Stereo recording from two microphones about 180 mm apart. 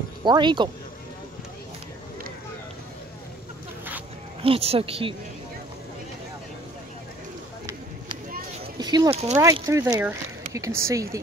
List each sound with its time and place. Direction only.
0.2 s speech: 25° right (ahead or behind)
4.4 s a woman's voice: 30° right (ahead or behind)
8.7 s speech: 25° right (ahead or behind)